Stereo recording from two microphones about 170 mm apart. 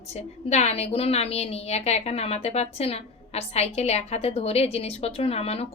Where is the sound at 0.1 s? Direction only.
40° left (ahead or behind).